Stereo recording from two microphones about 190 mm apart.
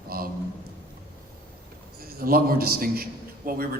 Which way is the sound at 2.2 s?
50° right (ahead or behind).